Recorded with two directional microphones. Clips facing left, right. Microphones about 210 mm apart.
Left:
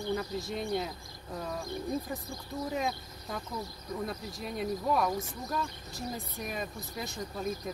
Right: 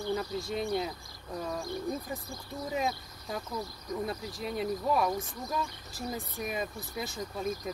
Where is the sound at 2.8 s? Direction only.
Centre (ahead or behind).